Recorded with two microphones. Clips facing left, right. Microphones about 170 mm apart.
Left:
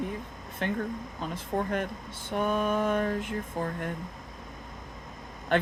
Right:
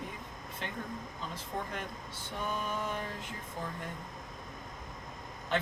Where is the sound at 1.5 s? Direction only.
45° left (ahead or behind).